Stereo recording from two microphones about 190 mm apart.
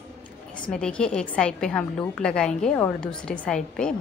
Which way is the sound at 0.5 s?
5° left (ahead or behind).